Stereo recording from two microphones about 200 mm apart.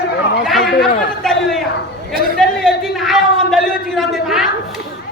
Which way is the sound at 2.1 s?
45° right (ahead or behind).